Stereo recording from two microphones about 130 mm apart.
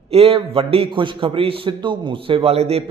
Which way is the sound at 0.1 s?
45° right (ahead or behind).